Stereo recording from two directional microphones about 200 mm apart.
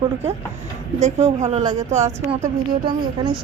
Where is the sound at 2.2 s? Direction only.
35° right (ahead or behind).